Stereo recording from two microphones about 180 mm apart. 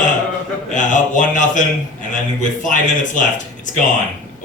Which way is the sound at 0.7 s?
45° left (ahead or behind).